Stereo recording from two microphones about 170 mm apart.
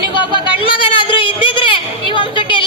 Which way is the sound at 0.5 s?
30° left (ahead or behind).